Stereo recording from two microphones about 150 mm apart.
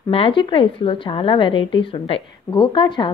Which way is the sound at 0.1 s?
35° left (ahead or behind).